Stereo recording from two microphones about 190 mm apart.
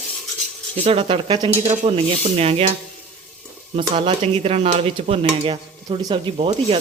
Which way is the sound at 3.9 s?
30° right (ahead or behind).